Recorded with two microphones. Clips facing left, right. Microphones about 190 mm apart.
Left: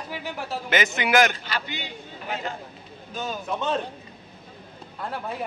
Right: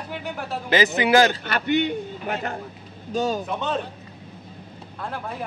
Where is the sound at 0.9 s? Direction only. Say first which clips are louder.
Right 3 dB; 30° right (ahead or behind).